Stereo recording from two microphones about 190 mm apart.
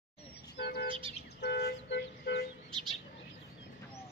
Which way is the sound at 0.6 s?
60° left (ahead or behind).